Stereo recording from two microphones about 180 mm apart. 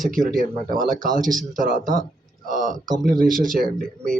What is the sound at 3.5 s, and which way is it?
Speech, centre (ahead or behind).